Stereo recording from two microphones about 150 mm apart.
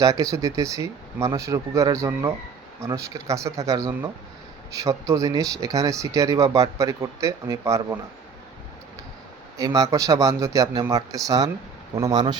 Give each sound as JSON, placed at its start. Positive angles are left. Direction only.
{"t": 0.0, "sound": "speech", "side_deg": -20}
{"t": 9.6, "sound": "speech", "side_deg": -25}